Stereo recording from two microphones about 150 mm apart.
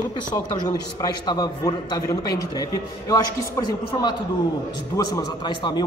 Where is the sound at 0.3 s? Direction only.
25° left (ahead or behind).